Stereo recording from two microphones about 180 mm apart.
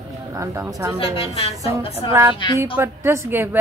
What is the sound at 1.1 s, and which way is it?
Speech, 30° left (ahead or behind).